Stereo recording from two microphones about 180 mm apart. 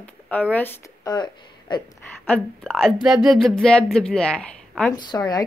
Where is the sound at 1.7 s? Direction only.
25° left (ahead or behind).